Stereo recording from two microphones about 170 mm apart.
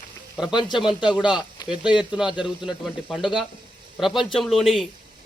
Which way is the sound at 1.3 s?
25° left (ahead or behind).